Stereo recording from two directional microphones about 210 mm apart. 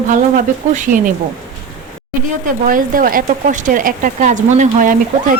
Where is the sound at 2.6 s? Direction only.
40° right (ahead or behind).